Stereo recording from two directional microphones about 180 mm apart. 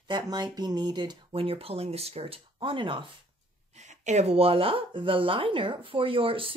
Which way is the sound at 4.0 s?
40° right (ahead or behind).